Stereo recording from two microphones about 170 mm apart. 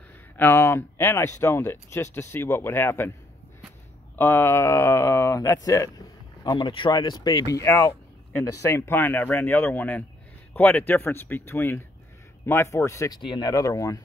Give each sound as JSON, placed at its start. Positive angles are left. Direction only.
{"t": 0.4, "sound": "speech", "side_deg": 15}
{"t": 4.2, "sound": "speech", "side_deg": 10}